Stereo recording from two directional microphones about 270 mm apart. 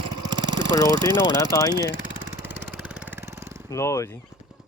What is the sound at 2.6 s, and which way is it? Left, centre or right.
Vehicle, centre.